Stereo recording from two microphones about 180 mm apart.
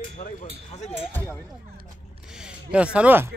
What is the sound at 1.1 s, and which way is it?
Speech, 10° left (ahead or behind).